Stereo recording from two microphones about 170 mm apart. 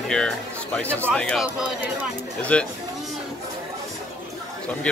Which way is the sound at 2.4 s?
5° left (ahead or behind).